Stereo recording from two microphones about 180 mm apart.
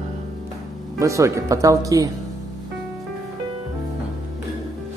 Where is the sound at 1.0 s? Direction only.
15° right (ahead or behind).